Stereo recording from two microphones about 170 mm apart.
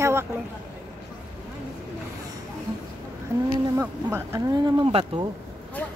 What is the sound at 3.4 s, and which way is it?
Speech, 15° right (ahead or behind).